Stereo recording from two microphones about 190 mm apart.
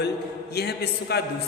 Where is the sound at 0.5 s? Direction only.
60° left (ahead or behind).